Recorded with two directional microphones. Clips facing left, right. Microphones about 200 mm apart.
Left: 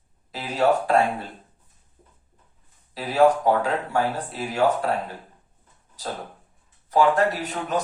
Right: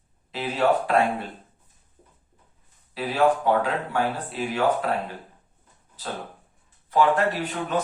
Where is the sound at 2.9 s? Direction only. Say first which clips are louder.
Left 3 dB; 40° left (ahead or behind).